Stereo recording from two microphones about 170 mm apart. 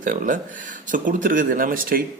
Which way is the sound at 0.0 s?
50° right (ahead or behind).